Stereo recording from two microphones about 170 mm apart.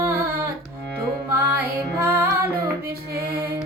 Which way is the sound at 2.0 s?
15° right (ahead or behind).